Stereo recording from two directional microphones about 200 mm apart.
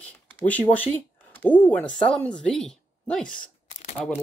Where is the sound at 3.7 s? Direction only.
35° left (ahead or behind).